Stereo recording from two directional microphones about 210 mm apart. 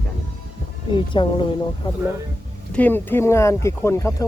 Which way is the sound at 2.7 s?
10° left (ahead or behind).